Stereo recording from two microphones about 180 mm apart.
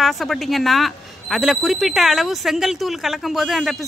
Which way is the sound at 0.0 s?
Centre (ahead or behind).